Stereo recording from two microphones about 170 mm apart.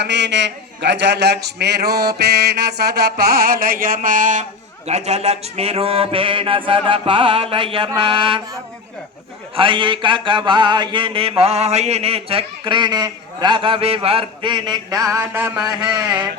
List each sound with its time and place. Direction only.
0.0 s a man's voice: 90° right; by 8.4 s 30° right (ahead or behind)
9.6 s speech: 30° right (ahead or behind); by 15.6 s 10° right (ahead or behind)
15.8 s speech: 25° right (ahead or behind)